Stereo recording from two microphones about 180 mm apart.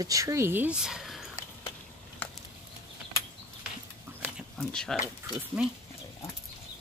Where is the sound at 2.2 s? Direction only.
10° left (ahead or behind).